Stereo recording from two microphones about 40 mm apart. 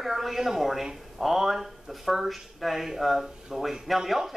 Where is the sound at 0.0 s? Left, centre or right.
Centre.